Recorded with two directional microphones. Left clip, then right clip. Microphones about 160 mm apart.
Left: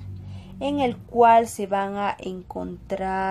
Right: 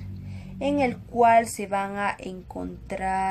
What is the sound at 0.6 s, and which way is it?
A woman's voice, 25° left (ahead or behind).